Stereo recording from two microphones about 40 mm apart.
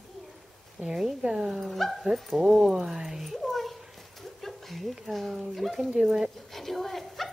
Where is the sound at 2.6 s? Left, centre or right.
Centre.